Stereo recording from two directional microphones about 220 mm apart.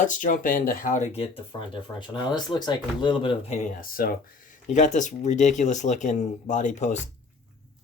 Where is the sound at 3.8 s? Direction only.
40° left (ahead or behind).